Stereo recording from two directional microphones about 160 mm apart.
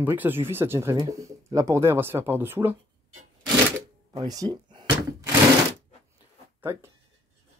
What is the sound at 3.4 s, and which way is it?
Cash register, 25° right (ahead or behind).